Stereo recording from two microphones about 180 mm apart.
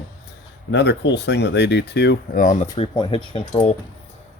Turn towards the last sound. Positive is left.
turn(degrees=30)  # may be behind; listen again after turning